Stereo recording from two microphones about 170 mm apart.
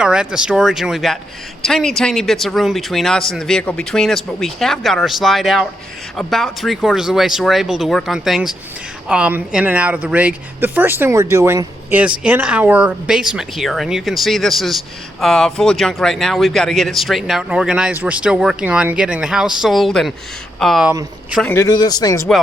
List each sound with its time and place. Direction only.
0.0 s speech: 5° right (ahead or behind)
21.4 s speech: 15° left (ahead or behind)